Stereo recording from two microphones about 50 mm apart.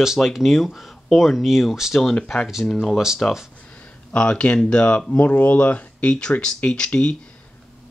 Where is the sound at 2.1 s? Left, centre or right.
Centre.